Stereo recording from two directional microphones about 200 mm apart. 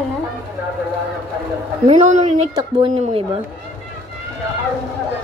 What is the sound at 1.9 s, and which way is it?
A woman's voice, 35° right (ahead or behind).